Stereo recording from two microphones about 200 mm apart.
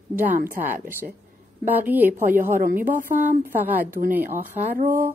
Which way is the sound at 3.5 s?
10° right (ahead or behind).